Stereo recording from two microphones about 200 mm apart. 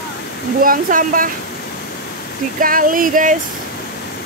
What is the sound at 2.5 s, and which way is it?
Speech, 45° right (ahead or behind).